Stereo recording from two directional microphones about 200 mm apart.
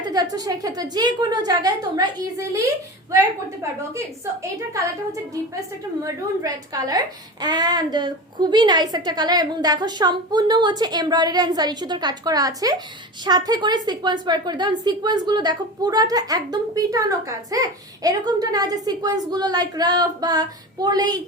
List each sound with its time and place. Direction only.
0.0 s a woman's voice: 20° right (ahead or behind)
6.4 s a woman's voice: 20° right (ahead or behind)